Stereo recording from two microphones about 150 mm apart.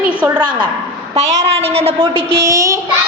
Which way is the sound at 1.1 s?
45° right (ahead or behind).